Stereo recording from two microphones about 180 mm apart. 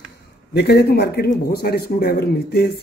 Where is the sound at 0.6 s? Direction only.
65° left (ahead or behind).